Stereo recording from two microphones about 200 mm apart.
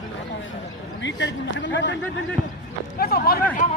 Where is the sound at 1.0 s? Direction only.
65° left (ahead or behind).